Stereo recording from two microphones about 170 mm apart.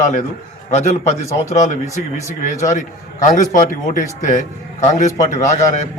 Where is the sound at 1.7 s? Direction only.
45° left (ahead or behind).